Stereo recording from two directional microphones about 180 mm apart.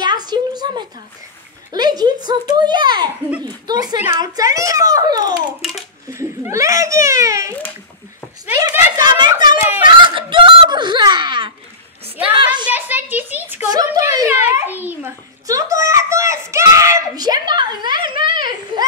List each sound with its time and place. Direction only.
0.0 s a sound: 25° right (ahead or behind)
1.7 s speech: 20° right (ahead or behind)
5.6 s speech: centre (ahead or behind)
6.0 s a child's voice: 15° right (ahead or behind)
8.5 s speech: 20° right (ahead or behind)
9.8 s a sound: 25° right (ahead or behind)
12.2 s speech: 30° right (ahead or behind)
12.6 s a child's voice: 10° right (ahead or behind); by 18.3 s 25° right (ahead or behind)